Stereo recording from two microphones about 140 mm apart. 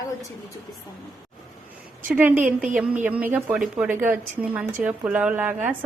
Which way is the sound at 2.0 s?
15° right (ahead or behind).